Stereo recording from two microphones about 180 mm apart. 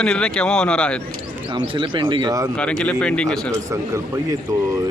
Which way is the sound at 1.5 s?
25° right (ahead or behind).